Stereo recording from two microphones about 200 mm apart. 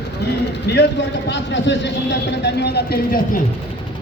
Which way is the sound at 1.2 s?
60° left (ahead or behind).